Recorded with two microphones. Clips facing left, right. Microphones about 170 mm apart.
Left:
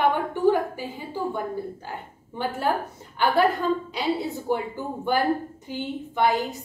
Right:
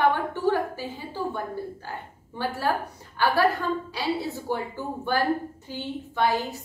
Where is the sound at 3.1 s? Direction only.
20° left (ahead or behind).